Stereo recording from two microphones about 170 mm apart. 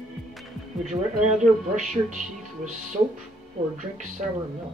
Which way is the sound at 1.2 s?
45° right (ahead or behind).